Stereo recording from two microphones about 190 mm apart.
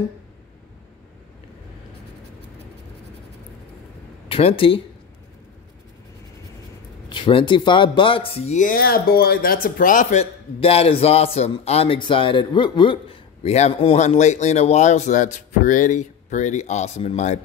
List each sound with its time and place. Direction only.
4.3 s speech: 30° left (ahead or behind)
7.1 s speech: 25° left (ahead or behind)